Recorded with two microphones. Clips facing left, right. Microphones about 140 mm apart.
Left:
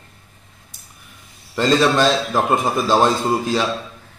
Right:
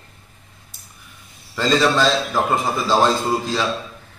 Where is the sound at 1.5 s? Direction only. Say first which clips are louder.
Left 2 dB; 15° left (ahead or behind).